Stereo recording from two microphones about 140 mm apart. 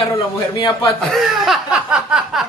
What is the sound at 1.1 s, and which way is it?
Chuckle, centre (ahead or behind).